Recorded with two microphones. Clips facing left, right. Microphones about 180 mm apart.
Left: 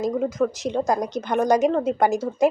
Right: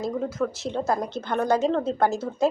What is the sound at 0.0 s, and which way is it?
Speech, 15° left (ahead or behind).